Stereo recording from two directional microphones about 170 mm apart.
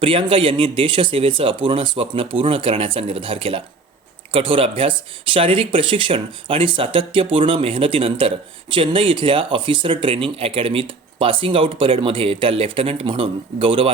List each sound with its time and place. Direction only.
0.0 s speech: 30° right (ahead or behind)